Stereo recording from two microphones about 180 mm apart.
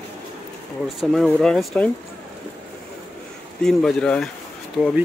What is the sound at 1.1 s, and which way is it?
Speech, centre (ahead or behind).